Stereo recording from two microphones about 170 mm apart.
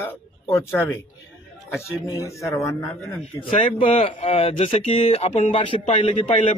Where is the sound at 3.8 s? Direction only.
30° left (ahead or behind).